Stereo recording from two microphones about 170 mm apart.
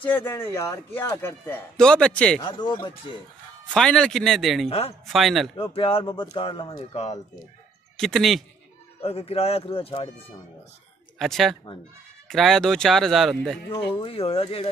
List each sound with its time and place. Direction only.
0.0 s speech: 10° left (ahead or behind)
2.4 s speech: 25° left (ahead or behind)
3.7 s speech: 5° left (ahead or behind)
4.6 s speech: 35° left (ahead or behind)
5.0 s speech: centre (ahead or behind)
5.6 s speech: 30° left (ahead or behind)
8.0 s speech: centre (ahead or behind)
9.0 s speech: 35° left (ahead or behind)
11.1 s speech: centre (ahead or behind)
14.0 s speech: 35° left (ahead or behind)